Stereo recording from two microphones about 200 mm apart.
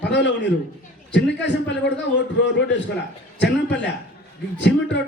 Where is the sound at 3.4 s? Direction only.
60° left (ahead or behind).